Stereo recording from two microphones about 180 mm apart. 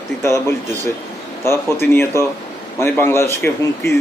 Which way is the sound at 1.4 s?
15° left (ahead or behind).